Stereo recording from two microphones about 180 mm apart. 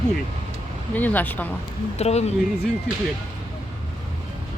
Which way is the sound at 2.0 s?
35° left (ahead or behind).